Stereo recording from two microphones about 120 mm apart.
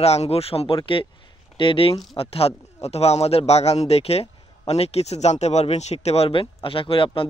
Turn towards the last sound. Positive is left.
turn(degrees=50)  # may be behind; listen again after turning